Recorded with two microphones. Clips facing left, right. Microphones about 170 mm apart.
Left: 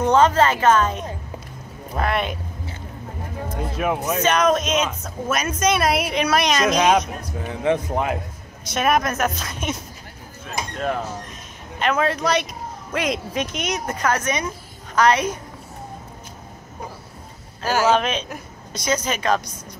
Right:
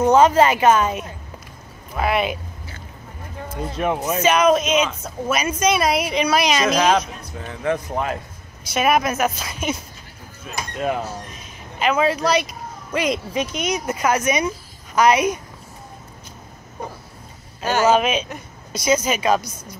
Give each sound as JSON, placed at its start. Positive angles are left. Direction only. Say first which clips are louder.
{"t": 0.0, "sound": "a woman's voice", "louder": "right 2 dB", "side_deg": -10}
{"t": 3.6, "sound": "speech", "louder": "right 1 dB", "side_deg": 5}
{"t": 7.3, "sound": "speech", "louder": "left 2 dB", "side_deg": 15}
{"t": 8.6, "sound": "speech", "louder": "right 1 dB", "side_deg": -5}
{"t": 10.4, "sound": "a sound", "louder": "right 1 dB", "side_deg": -10}
{"t": 11.8, "sound": "a woman's voice", "louder": "right 2 dB", "side_deg": -5}
{"t": 17.6, "sound": "speech", "louder": "right 2 dB", "side_deg": 5}
{"t": 17.9, "sound": "a woman's voice", "louder": "right 2 dB", "side_deg": -10}